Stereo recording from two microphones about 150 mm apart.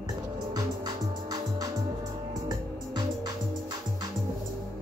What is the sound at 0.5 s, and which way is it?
Music, 25° right (ahead or behind).